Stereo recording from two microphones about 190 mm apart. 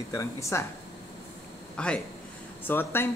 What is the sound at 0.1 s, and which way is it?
Speech, 15° left (ahead or behind).